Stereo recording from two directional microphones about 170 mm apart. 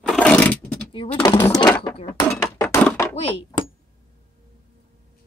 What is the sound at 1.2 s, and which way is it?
Speech, 20° left (ahead or behind).